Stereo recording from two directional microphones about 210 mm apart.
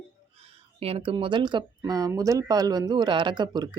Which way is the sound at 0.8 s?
30° right (ahead or behind).